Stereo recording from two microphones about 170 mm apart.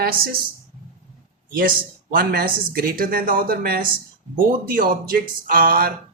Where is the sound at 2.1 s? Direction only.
60° right (ahead or behind).